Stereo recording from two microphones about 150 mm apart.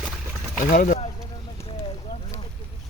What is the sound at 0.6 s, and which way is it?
Speech, 60° left (ahead or behind).